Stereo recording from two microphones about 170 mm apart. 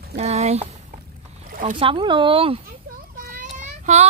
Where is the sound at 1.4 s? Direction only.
55° right (ahead or behind).